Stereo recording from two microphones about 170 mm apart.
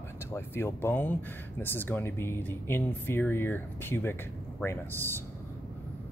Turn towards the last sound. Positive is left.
turn(degrees=15)  # may be behind; listen again after turning